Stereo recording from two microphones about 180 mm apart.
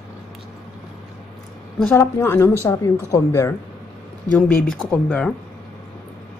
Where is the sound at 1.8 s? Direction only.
10° left (ahead or behind).